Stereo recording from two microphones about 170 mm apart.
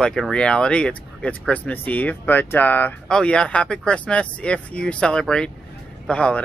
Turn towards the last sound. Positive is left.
turn(degrees=5)  # may be behind; listen again after turning